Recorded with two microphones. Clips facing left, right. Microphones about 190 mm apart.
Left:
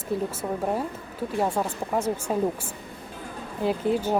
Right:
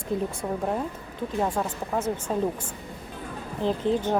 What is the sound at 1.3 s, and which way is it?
A woman's voice, 10° left (ahead or behind).